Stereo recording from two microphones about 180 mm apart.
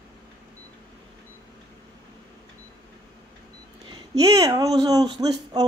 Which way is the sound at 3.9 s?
20° right (ahead or behind).